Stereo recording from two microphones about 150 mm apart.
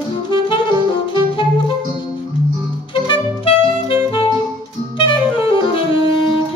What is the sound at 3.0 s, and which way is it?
Music, 35° left (ahead or behind).